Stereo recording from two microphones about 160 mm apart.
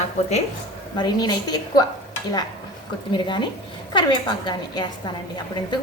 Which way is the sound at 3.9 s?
30° left (ahead or behind).